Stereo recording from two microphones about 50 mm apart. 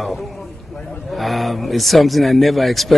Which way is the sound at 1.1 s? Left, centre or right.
Centre.